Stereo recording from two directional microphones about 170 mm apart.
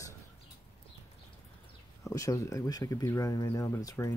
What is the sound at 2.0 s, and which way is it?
Speech, 20° left (ahead or behind).